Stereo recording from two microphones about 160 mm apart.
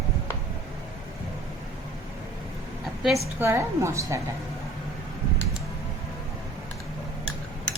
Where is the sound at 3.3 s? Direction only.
15° right (ahead or behind).